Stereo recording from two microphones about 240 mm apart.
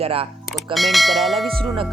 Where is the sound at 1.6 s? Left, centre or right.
Centre.